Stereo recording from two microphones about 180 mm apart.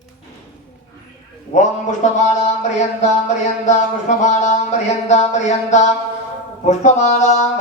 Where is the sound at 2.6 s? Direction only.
40° left (ahead or behind).